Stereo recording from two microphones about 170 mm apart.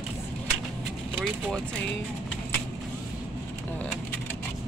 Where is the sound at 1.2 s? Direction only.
Centre (ahead or behind).